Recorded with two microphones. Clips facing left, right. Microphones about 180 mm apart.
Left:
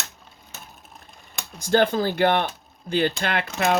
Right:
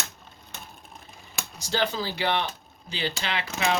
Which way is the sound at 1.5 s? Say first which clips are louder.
Left 8 dB; 50° left (ahead or behind).